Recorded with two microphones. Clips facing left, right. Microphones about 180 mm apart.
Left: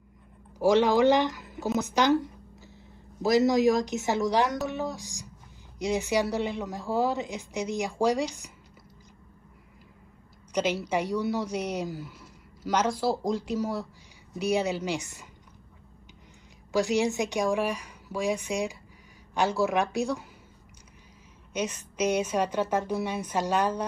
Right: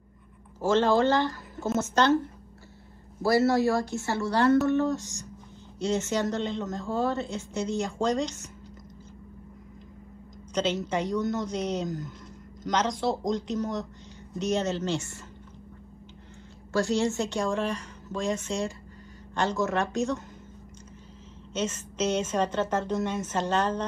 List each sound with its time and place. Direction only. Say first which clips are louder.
0.6 s a woman's voice: left 1 dB; 15° left (ahead or behind)
10.5 s a woman's voice: even; 10° left (ahead or behind)
16.7 s a woman's voice: even; 15° left (ahead or behind)
21.5 s a woman's voice: even; 15° left (ahead or behind)